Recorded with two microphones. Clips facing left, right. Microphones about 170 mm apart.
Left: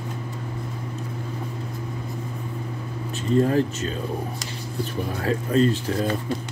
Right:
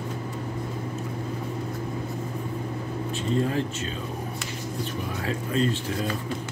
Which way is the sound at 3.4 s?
45° left (ahead or behind).